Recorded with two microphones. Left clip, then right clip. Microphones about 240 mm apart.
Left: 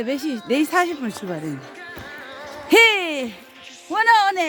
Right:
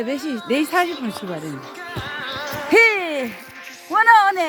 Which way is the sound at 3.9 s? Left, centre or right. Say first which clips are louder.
Right 3 dB; centre.